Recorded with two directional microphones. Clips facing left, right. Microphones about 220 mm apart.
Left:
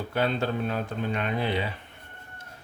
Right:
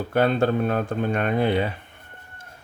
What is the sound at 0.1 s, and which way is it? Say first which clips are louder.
Speech: right 7 dB; 50° right (ahead or behind).